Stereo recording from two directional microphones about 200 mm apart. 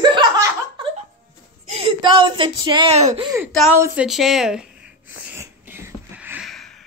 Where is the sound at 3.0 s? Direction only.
35° right (ahead or behind).